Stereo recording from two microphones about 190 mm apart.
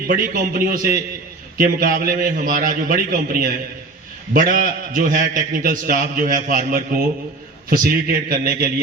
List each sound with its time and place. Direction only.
0.1 s a man's voice: 45° right (ahead or behind)